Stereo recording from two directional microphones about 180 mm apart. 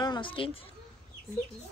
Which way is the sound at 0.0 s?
25° left (ahead or behind).